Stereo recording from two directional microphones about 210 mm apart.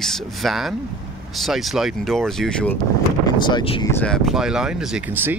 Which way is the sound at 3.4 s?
25° left (ahead or behind).